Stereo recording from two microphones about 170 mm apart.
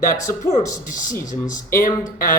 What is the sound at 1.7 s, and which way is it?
Speech, 50° left (ahead or behind).